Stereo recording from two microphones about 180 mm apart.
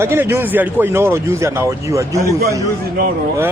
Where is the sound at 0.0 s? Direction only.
15° right (ahead or behind).